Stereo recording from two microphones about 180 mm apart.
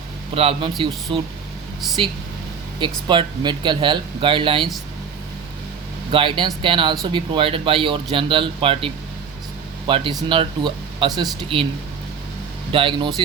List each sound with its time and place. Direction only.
0.3 s a man's voice: 30° right (ahead or behind)
2.8 s speech: 25° right (ahead or behind)
6.1 s speech: 30° right (ahead or behind)
12.7 s speech: 25° right (ahead or behind)